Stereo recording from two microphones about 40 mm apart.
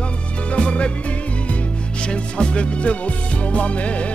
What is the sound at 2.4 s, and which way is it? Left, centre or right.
Music, left.